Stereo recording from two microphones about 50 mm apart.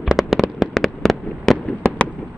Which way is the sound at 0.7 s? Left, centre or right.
Centre.